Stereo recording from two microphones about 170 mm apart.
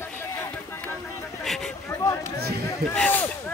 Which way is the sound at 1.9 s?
15° left (ahead or behind).